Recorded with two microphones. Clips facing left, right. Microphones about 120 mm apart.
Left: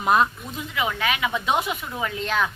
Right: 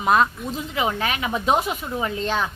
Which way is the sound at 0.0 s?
Centre (ahead or behind).